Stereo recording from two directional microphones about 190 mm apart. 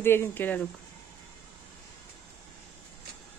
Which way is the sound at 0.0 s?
10° left (ahead or behind).